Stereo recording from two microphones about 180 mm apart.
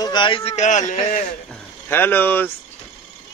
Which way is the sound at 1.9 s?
10° left (ahead or behind).